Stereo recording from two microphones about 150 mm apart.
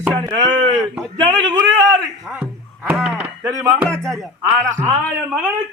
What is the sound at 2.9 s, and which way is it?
Speech, 5° right (ahead or behind).